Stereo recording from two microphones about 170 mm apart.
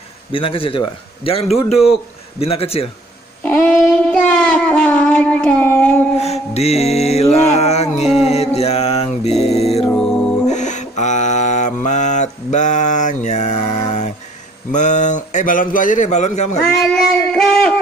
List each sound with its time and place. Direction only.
0.3 s a man's voice: 30° left (ahead or behind)
3.4 s child singing: 10° left (ahead or behind)
6.1 s mantra: 40° left (ahead or behind)
14.7 s a man's voice: 45° left (ahead or behind)
16.5 s a sound: 5° left (ahead or behind)